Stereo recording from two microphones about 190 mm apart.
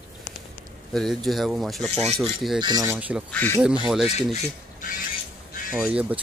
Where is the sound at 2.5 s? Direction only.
20° right (ahead or behind).